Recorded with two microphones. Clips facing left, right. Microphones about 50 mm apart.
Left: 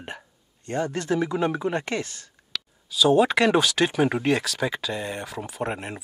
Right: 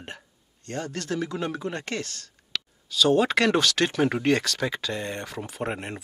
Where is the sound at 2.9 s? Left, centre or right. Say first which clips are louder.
Left 2 dB; centre.